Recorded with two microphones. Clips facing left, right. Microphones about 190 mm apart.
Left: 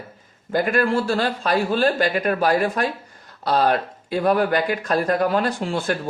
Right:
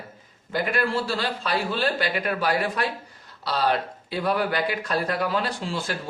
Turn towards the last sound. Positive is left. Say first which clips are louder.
# left 6 dB
turn(degrees=55)  # may be behind; listen again after turning